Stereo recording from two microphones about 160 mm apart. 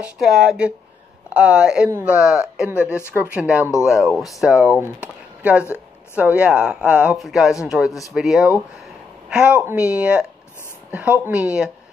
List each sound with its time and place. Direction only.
0.0 s speech: 5° right (ahead or behind)
3.0 s speech: 15° left (ahead or behind)
3.3 s speech: 5° right (ahead or behind)